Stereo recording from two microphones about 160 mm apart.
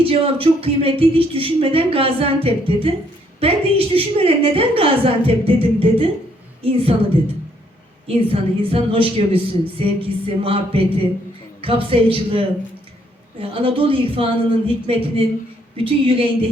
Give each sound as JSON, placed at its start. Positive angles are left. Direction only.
{"t": 0.0, "sound": "speech", "side_deg": -35}
{"t": 8.0, "sound": "speech", "side_deg": -35}